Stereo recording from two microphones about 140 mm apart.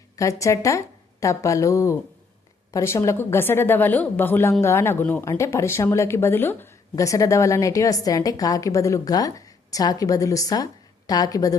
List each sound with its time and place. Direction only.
0.2 s a woman's voice: 20° left (ahead or behind)